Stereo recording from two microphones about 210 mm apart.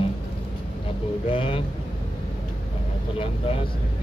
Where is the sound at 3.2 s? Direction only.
25° left (ahead or behind).